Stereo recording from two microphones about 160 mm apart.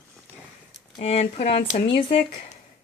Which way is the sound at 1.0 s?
40° left (ahead or behind).